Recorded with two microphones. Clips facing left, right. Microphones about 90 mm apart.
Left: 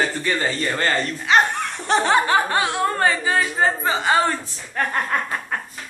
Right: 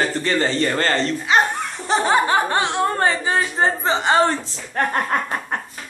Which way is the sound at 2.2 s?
30° right (ahead or behind).